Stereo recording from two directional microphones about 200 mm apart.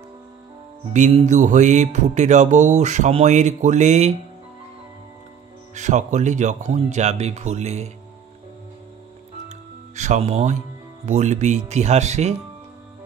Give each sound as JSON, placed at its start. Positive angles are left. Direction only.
{"t": 0.9, "sound": "music", "side_deg": -35}
{"t": 5.8, "sound": "music", "side_deg": -35}
{"t": 9.9, "sound": "speech", "side_deg": -35}
{"t": 11.1, "sound": "music", "side_deg": -35}